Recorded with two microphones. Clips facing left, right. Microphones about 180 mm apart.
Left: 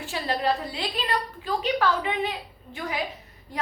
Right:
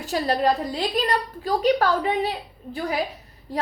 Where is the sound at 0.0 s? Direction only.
40° right (ahead or behind).